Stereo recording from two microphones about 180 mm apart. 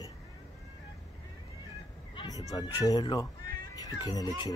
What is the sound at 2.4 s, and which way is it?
Speech, 20° left (ahead or behind).